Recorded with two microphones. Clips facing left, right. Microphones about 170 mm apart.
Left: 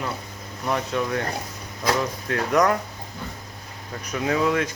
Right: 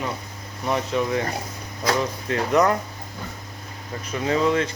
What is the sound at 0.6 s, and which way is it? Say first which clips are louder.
Speech: right 2 dB; centre (ahead or behind).